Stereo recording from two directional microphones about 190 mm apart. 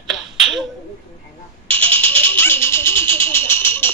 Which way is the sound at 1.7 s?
10° left (ahead or behind).